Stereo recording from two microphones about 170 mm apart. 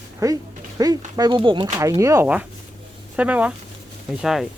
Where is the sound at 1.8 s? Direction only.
20° right (ahead or behind); by 4.5 s centre (ahead or behind).